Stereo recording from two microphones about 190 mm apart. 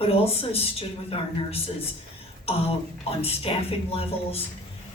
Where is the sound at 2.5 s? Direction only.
30° left (ahead or behind).